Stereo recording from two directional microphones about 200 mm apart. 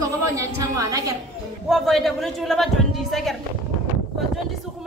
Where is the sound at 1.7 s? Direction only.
Centre (ahead or behind).